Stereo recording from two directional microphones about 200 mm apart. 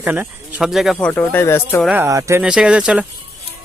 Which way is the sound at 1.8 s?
10° right (ahead or behind).